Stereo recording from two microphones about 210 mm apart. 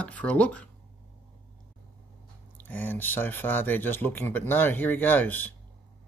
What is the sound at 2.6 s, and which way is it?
Speech, 10° left (ahead or behind).